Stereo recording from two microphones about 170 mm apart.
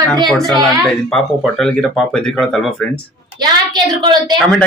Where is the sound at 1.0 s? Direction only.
5° left (ahead or behind).